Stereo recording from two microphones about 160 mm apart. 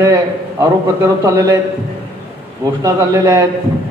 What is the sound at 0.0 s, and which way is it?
A man's voice, 20° right (ahead or behind).